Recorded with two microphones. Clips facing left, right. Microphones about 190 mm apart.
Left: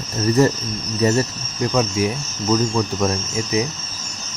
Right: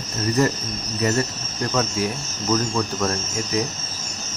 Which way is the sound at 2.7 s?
15° left (ahead or behind).